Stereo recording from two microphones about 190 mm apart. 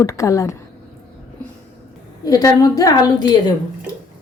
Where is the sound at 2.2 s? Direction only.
20° left (ahead or behind).